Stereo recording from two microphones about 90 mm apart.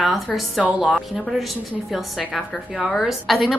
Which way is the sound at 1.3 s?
10° right (ahead or behind).